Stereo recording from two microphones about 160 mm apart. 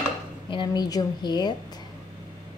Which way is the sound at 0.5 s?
25° left (ahead or behind).